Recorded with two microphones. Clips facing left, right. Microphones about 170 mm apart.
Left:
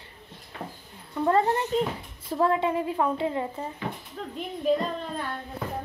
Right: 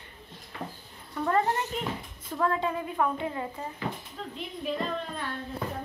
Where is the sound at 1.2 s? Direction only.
25° left (ahead or behind).